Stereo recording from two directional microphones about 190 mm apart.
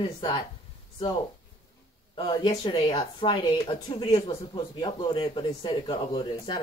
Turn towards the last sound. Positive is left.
turn(degrees=25)  # may be behind; listen again after turning